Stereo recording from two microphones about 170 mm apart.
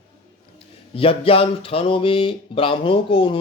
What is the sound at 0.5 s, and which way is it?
Speech, 35° left (ahead or behind).